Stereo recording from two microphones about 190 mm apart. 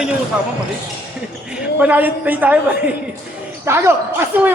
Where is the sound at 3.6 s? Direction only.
15° right (ahead or behind).